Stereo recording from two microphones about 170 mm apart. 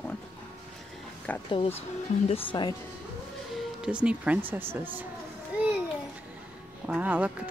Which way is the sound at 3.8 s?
5° right (ahead or behind).